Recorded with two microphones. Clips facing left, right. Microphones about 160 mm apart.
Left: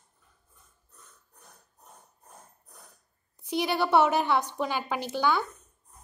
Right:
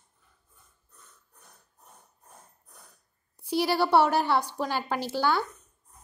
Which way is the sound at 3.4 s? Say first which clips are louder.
Right 2 dB; 20° left (ahead or behind).